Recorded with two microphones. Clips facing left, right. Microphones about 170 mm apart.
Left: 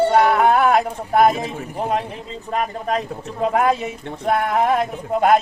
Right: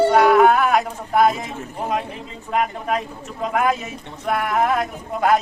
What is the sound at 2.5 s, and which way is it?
A man's voice, 30° left (ahead or behind).